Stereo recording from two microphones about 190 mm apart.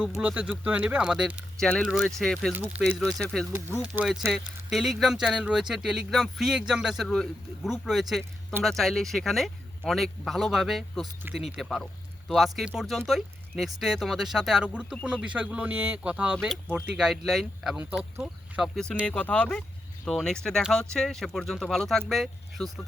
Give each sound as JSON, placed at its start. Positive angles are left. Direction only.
{"t": 0.1, "sound": "speech", "side_deg": -5}